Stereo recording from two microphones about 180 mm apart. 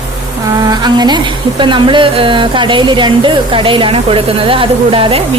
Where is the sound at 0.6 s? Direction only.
25° right (ahead or behind).